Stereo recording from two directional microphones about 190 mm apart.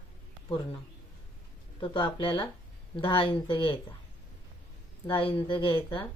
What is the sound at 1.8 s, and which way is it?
A woman's voice, 25° left (ahead or behind).